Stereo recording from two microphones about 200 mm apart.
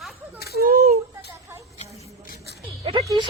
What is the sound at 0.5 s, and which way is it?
Speech, 50° right (ahead or behind).